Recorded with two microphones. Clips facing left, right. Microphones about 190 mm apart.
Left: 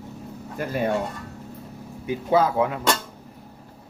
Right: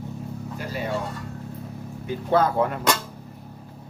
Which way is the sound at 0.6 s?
55° left (ahead or behind).